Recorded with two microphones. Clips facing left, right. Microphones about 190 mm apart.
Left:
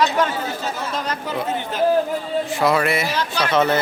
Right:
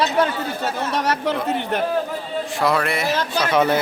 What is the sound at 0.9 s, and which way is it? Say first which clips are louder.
Speech: right 4 dB; 70° right (ahead or behind).